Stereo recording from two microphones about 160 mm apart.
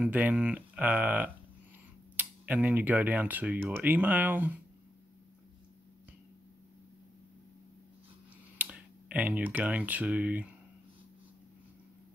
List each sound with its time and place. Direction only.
0.0 s speech: 10° right (ahead or behind)
8.5 s speech: 10° right (ahead or behind)